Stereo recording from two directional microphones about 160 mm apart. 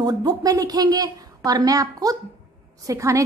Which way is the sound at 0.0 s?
25° right (ahead or behind).